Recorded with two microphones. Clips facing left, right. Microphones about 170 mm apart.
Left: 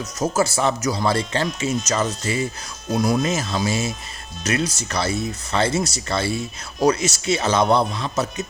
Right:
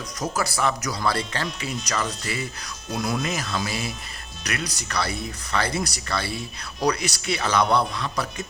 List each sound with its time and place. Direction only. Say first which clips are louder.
0.2 s speech: left 5 dB; 25° left (ahead or behind)